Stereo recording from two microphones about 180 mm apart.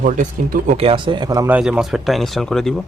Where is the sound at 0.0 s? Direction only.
45° right (ahead or behind); by 1.5 s 25° right (ahead or behind).